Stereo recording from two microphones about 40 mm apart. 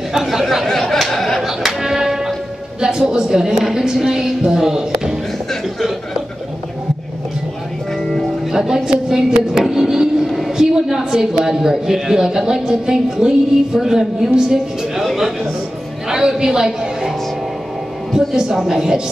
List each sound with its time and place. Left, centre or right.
0.1 s speech: centre
0.7 s a sound: centre
1.6 s music: centre
2.8 s speech: centre
5.5 s chuckle: centre
8.5 s a man's voice: centre
15.0 s a sound: centre
16.1 s a sound: centre
18.3 s speech: centre